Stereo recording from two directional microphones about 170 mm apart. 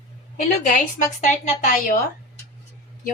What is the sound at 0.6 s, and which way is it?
Speech, 50° left (ahead or behind).